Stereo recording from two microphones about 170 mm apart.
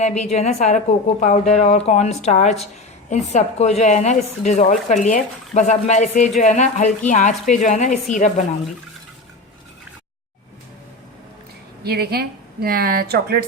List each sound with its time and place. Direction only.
0.0 s a woman's voice: 40° left (ahead or behind)
11.8 s a woman's voice: 65° right (ahead or behind)